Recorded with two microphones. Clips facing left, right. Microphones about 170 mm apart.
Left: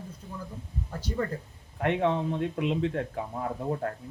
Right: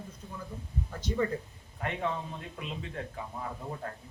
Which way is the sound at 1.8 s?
75° left (ahead or behind).